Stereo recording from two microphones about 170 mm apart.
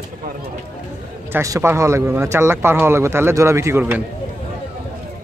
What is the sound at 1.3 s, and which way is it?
Speech, 15° right (ahead or behind).